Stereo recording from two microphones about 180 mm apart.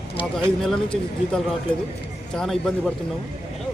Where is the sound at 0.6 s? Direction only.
5° left (ahead or behind).